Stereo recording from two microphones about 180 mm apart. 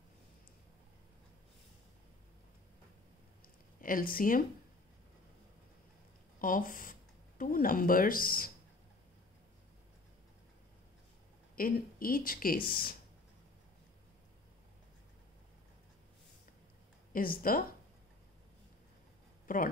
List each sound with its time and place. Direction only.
3.8 s speech: 50° left (ahead or behind)
6.4 s speech: 50° left (ahead or behind)
11.5 s speech: 55° left (ahead or behind)
17.1 s speech: 50° left (ahead or behind)
19.4 s speech: 50° left (ahead or behind)